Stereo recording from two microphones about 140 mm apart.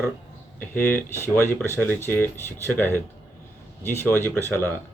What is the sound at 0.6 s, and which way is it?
Speech, 15° left (ahead or behind).